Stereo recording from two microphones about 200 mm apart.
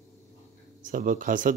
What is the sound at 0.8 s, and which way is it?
Speech, 40° right (ahead or behind).